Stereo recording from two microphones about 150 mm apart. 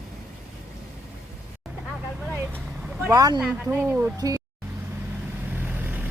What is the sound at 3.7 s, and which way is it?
Speech, 10° right (ahead or behind).